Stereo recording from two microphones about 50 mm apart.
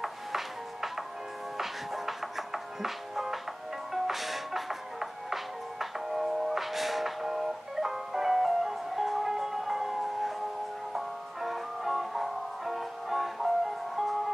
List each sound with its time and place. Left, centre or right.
0.0 s music: centre